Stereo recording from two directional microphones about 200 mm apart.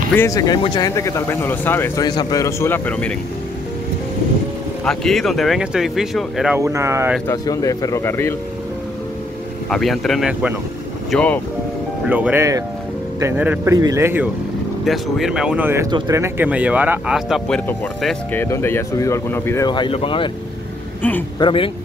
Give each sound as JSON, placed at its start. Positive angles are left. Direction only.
{"t": 0.1, "sound": "speech", "side_deg": 15}
{"t": 4.8, "sound": "speech", "side_deg": 0}
{"t": 6.6, "sound": "speech", "side_deg": -15}
{"t": 7.2, "sound": "speech", "side_deg": 15}
{"t": 9.7, "sound": "speech", "side_deg": 0}
{"t": 12.1, "sound": "speech", "side_deg": -10}
{"t": 17.6, "sound": "speech", "side_deg": 10}
{"t": 21.4, "sound": "speech", "side_deg": 25}